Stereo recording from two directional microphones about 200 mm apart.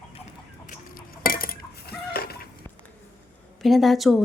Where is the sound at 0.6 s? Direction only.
45° left (ahead or behind).